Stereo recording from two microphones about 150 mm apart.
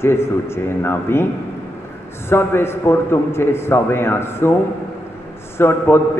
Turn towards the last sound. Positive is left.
turn(degrees=15)  # may be behind; listen again after turning